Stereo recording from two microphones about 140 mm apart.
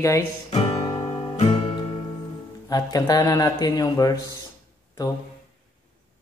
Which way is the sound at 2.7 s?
25° left (ahead or behind).